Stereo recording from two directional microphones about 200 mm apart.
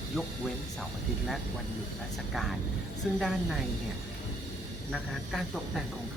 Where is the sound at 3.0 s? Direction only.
Centre (ahead or behind).